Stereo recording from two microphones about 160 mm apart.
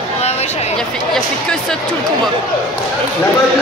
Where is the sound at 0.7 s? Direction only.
5° left (ahead or behind).